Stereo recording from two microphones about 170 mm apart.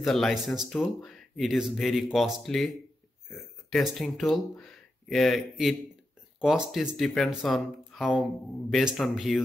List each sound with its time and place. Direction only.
0.0 s speech: centre (ahead or behind)